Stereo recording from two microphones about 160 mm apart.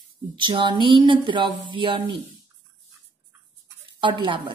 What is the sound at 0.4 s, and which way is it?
Speech, 30° right (ahead or behind).